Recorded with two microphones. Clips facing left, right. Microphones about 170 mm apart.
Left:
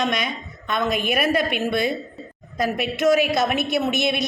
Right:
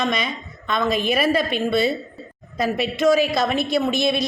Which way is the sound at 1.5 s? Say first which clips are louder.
Right 2 dB; 15° left (ahead or behind).